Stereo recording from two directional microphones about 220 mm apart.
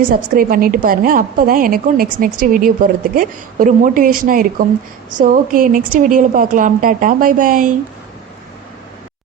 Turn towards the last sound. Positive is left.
turn(degrees=-35)  # may be behind; listen again after turning